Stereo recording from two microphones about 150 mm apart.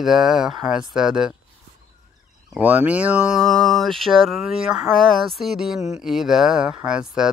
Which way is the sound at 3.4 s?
Centre (ahead or behind).